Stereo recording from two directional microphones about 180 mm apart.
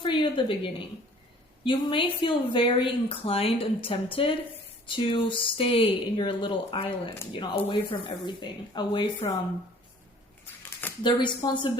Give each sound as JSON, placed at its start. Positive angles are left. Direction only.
{"t": 0.0, "sound": "a woman's voice", "side_deg": 25}
{"t": 11.0, "sound": "speech", "side_deg": 25}